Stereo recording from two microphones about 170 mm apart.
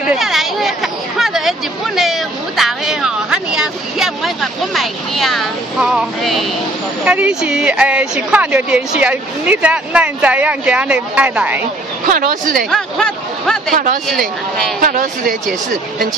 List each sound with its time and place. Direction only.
0.0 s hubbub: 5° right (ahead or behind)
2.0 s a woman's voice: centre (ahead or behind)
12.1 s speech: 55° right (ahead or behind)
12.7 s speech: centre (ahead or behind)
14.8 s speech: 55° right (ahead or behind)